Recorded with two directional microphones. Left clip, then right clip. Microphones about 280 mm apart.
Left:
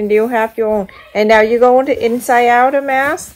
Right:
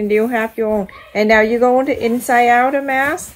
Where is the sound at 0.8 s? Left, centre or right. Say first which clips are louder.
Left 2 dB; left.